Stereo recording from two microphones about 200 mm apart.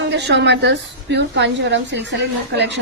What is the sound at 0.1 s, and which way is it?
A woman's voice, 60° right (ahead or behind).